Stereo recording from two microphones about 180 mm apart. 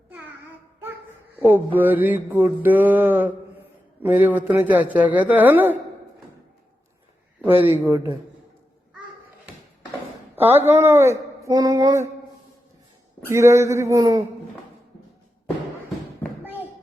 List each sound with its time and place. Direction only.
1.4 s mantra: 10° right (ahead or behind)
7.6 s mantra: 10° right (ahead or behind)
10.3 s speech: 10° right (ahead or behind)
13.2 s mantra: 15° right (ahead or behind)